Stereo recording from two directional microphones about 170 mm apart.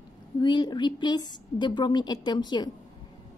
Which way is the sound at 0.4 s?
25° left (ahead or behind).